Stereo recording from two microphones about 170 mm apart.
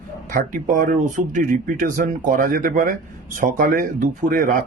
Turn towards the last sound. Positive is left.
turn(degrees=-55)  # may be behind; listen again after turning